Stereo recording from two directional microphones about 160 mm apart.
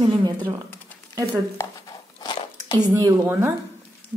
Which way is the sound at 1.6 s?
25° left (ahead or behind).